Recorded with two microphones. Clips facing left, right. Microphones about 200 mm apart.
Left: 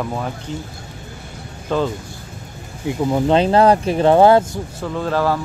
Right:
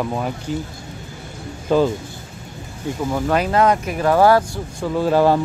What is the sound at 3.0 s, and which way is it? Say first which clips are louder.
Speech: left 4 dB; 20° left (ahead or behind).